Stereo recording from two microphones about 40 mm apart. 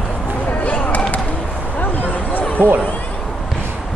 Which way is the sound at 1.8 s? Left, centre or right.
Left.